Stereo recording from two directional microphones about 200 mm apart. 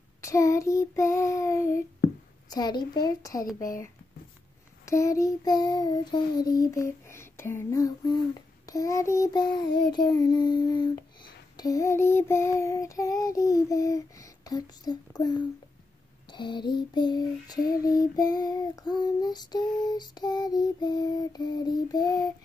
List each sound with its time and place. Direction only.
0.2 s child singing: 15° left (ahead or behind)
2.5 s female singing: 20° left (ahead or behind)
4.8 s child singing: 15° left (ahead or behind)
9.9 s female singing: 20° left (ahead or behind)
11.5 s child singing: 15° left (ahead or behind)
16.3 s female singing: 25° left (ahead or behind)